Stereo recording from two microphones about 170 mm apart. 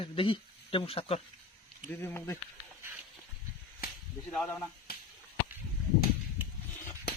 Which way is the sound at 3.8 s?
65° left (ahead or behind).